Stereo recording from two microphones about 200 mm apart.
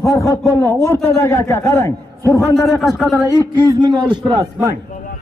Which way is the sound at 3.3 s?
20° right (ahead or behind).